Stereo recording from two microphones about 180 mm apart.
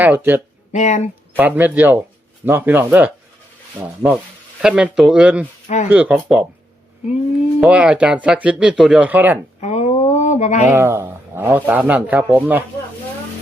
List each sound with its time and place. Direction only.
0.0 s speech: 10° right (ahead or behind)
0.7 s speech: 40° left (ahead or behind)
1.4 s speech: 10° right (ahead or behind)
5.6 s speech: 40° left (ahead or behind)
5.9 s speech: 5° right (ahead or behind)
7.6 s speech: 5° right (ahead or behind)
9.6 s a sound: 40° left (ahead or behind)
10.7 s speech: 15° right (ahead or behind)